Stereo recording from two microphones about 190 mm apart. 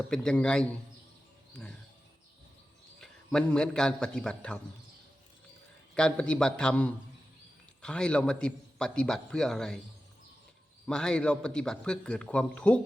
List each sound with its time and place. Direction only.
0.1 s a man's voice: 5° left (ahead or behind)
1.5 s a sound: 5° left (ahead or behind)
3.0 s a man's voice: 5° left (ahead or behind)
5.9 s a man's voice: 5° left (ahead or behind)
10.8 s a man's voice: 5° left (ahead or behind)